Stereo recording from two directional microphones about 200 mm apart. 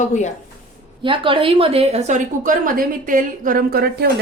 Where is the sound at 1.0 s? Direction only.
25° right (ahead or behind).